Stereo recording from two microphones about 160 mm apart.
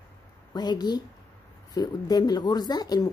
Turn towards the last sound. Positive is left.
turn(degrees=25)  # may be behind; listen again after turning